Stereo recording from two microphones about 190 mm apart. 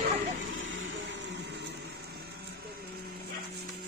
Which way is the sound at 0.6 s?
80° right.